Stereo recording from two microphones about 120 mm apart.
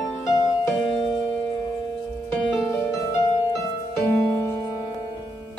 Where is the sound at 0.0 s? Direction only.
30° left (ahead or behind).